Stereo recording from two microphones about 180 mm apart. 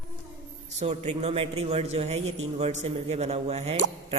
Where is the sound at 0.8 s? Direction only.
40° right (ahead or behind).